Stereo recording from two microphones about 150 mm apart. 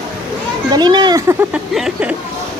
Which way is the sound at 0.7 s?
30° right (ahead or behind).